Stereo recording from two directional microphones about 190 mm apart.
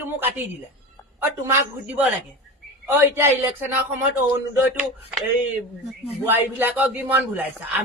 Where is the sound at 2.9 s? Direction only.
10° right (ahead or behind).